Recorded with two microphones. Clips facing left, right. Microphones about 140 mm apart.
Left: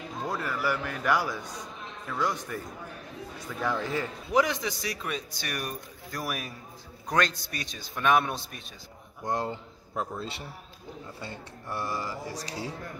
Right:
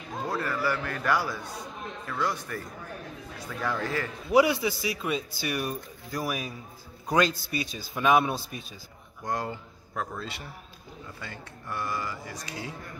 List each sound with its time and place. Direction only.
0.3 s a man's voice: 10° left (ahead or behind)
3.6 s speech: 15° left (ahead or behind)
4.3 s a man's voice: 10° right (ahead or behind)
9.2 s speech: 25° left (ahead or behind)